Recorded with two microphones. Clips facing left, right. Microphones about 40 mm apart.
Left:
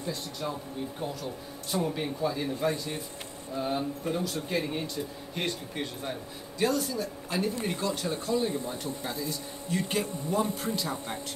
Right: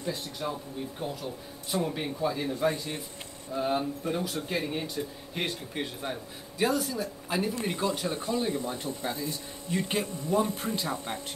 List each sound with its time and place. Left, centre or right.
0.0 s speech: centre
8.6 s speech: right